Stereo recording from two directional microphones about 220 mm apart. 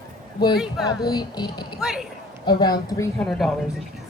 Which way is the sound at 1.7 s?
Centre (ahead or behind).